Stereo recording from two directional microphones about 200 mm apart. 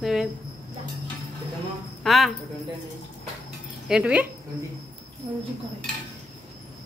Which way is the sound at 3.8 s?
5° right (ahead or behind).